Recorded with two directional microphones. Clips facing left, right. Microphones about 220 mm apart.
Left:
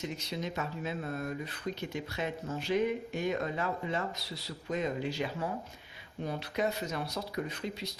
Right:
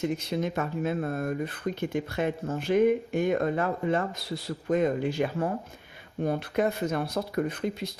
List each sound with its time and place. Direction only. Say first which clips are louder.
0.0 s speech: right 9 dB; 55° right (ahead or behind)